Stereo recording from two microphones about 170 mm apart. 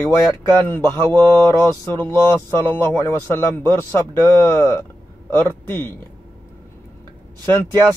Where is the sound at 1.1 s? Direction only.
15° left (ahead or behind).